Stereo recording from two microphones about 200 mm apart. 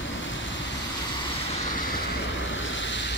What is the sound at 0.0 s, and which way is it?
Vehicle, 70° left (ahead or behind).